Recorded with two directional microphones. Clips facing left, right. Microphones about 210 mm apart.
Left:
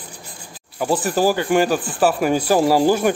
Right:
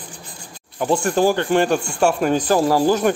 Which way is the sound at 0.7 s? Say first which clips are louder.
Right 1 dB; 5° left (ahead or behind).